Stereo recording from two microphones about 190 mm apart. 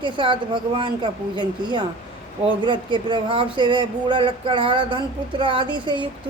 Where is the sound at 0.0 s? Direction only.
25° right (ahead or behind).